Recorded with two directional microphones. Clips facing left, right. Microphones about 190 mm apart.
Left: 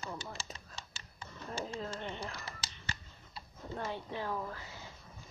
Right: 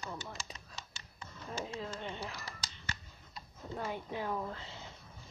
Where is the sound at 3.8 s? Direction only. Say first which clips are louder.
Right 1 dB; 15° right (ahead or behind).